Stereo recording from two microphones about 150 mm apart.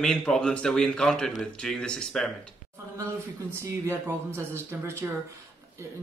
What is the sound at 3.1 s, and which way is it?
Speech, 20° right (ahead or behind).